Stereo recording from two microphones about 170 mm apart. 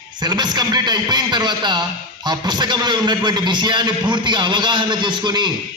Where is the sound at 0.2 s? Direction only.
25° right (ahead or behind).